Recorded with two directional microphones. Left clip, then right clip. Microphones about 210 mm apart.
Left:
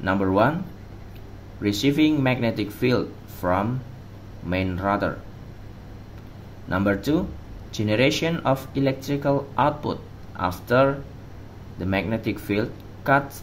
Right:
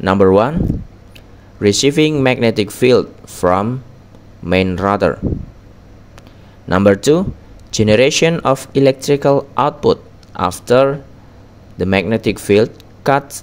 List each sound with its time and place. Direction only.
0.0 s speech: 45° right (ahead or behind)
1.6 s speech: 45° right (ahead or behind)
6.7 s speech: 45° right (ahead or behind)